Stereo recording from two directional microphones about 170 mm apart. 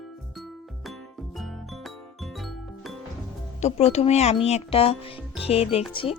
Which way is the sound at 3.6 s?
40° left (ahead or behind).